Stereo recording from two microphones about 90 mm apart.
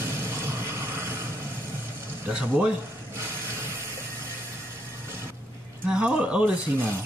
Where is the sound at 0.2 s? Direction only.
30° right (ahead or behind).